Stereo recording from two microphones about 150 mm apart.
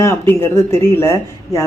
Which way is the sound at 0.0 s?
20° left (ahead or behind).